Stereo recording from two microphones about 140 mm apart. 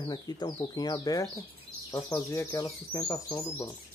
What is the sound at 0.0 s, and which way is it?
Speech, 30° left (ahead or behind).